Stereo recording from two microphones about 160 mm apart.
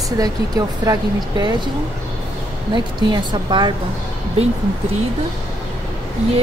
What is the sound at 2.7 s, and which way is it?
A woman's voice, 30° right (ahead or behind).